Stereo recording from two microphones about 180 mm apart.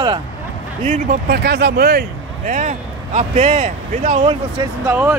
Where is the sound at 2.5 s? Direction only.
45° right (ahead or behind).